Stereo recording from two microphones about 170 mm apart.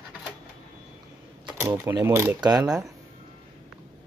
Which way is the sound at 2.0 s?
15° right (ahead or behind).